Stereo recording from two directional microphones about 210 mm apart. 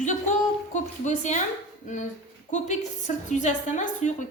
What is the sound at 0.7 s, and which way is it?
A woman's voice, 35° left (ahead or behind).